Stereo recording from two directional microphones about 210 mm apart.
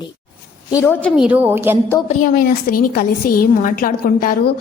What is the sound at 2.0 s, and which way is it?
A woman's voice, 40° left (ahead or behind).